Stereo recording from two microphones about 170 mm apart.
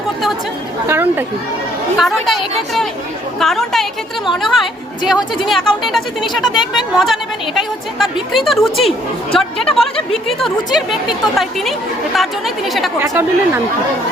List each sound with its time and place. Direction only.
0.9 s speech: 10° right (ahead or behind)
2.0 s a woman's voice: centre (ahead or behind)
13.0 s speech: 15° right (ahead or behind)